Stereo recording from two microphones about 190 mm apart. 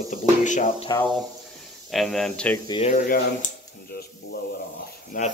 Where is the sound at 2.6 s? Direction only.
30° left (ahead or behind).